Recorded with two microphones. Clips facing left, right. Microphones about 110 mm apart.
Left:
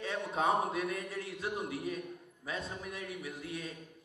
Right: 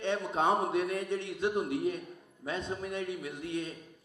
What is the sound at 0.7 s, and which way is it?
A man's voice, 30° right (ahead or behind).